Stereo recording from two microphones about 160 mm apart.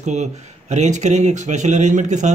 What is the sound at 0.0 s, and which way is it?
A man's voice, 45° right (ahead or behind).